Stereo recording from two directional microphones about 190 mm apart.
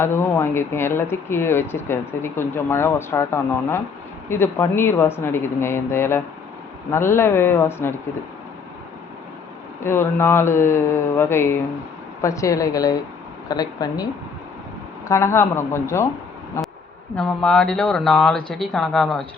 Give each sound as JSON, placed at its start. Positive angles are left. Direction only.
{"t": 0.0, "sound": "speech", "side_deg": 10}
{"t": 9.8, "sound": "speech", "side_deg": 10}
{"t": 16.6, "sound": "bee", "side_deg": 15}
{"t": 17.2, "sound": "speech", "side_deg": 5}